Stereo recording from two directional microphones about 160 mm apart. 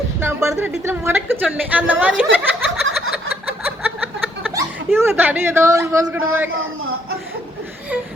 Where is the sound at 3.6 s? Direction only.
10° right (ahead or behind).